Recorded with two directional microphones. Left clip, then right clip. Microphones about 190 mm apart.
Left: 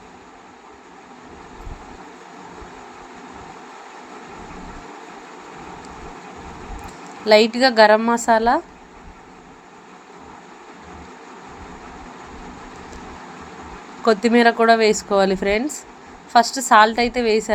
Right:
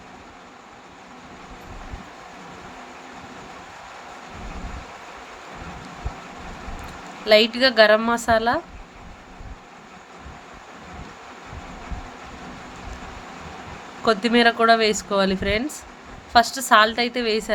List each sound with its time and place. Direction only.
7.3 s speech: 15° left (ahead or behind)
14.0 s speech: 15° left (ahead or behind)